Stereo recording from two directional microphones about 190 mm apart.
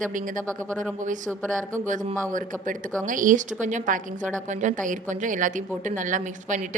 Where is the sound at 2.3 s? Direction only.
45° right (ahead or behind).